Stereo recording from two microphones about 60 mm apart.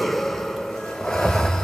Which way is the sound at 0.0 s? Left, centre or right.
Centre.